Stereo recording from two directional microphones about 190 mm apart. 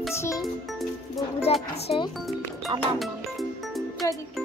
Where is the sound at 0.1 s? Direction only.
15° left (ahead or behind).